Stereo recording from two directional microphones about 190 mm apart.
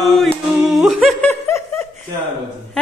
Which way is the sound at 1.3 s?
15° left (ahead or behind).